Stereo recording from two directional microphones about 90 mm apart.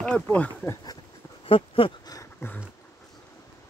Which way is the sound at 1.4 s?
90° left.